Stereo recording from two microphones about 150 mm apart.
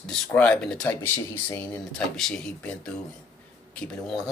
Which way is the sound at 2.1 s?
5° left (ahead or behind).